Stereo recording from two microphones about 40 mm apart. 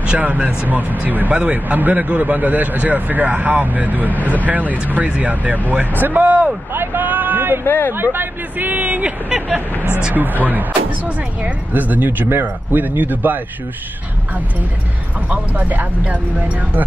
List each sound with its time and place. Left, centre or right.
0.2 s a man's voice: right
6.7 s a man's voice: right
7.1 s a sound: right
7.6 s speech: left
7.9 s a man's voice: right
10.1 s a man's voice: right
15.2 s a man's voice: right